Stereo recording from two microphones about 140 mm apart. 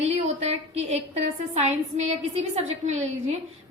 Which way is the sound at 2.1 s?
50° right (ahead or behind).